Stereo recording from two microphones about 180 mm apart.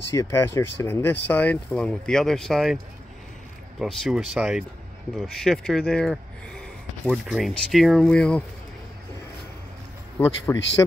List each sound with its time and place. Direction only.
0.1 s speech: 15° left (ahead or behind); by 2.8 s centre (ahead or behind)
3.8 s speech: centre (ahead or behind)
10.1 s speech: 15° left (ahead or behind)